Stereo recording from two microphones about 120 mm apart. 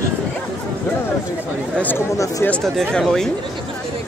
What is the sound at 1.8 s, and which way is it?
Speech, 15° left (ahead or behind).